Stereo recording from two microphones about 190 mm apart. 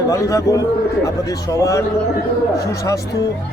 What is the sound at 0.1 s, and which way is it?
A man's voice, 15° left (ahead or behind).